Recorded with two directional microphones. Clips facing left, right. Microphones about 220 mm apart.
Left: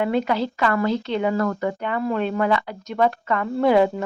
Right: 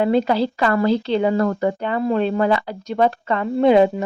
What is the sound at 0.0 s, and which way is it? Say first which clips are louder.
Speech: right 4 dB; 30° right (ahead or behind).